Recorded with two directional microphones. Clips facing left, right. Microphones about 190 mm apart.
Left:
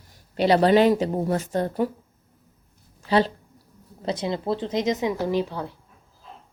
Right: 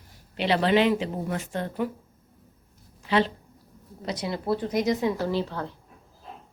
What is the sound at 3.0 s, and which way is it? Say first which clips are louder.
Speech: left 3 dB; 35° left (ahead or behind).